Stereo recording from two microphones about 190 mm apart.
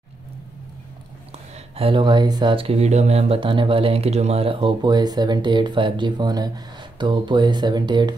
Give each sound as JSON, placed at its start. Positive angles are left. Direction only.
{"t": 1.3, "sound": "speech", "side_deg": -30}